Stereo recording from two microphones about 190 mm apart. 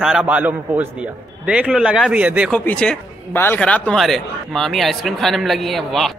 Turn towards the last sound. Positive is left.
turn(degrees=0)  # may be behind; listen again after turning